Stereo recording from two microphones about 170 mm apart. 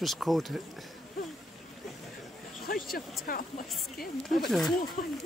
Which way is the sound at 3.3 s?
55° left (ahead or behind).